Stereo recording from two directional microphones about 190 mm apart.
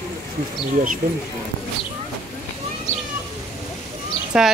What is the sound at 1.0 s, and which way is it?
Speech, 45° right (ahead or behind).